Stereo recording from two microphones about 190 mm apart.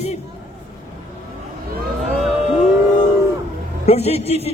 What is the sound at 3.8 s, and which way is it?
Speech, 35° left (ahead or behind).